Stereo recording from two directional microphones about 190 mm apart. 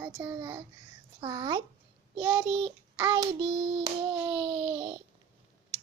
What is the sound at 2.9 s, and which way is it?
Child singing, 15° right (ahead or behind).